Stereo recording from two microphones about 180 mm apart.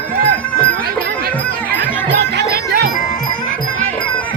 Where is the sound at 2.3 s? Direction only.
65° right (ahead or behind).